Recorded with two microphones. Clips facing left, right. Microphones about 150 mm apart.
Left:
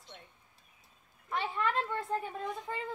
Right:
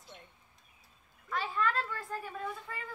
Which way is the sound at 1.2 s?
25° left (ahead or behind).